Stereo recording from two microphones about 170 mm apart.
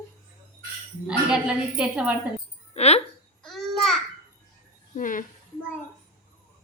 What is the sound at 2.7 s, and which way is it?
Speech, 40° left (ahead or behind).